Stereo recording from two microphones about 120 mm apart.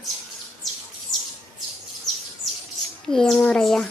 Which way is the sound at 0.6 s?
Centre (ahead or behind).